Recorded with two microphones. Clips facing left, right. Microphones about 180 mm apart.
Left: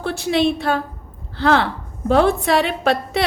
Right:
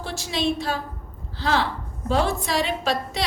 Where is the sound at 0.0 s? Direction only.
60° left (ahead or behind).